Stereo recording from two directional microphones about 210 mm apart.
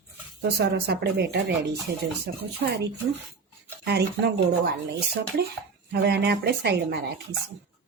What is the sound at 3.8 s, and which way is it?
Speech, 50° right (ahead or behind).